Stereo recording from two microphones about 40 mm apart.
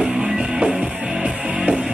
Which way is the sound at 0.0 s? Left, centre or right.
Centre.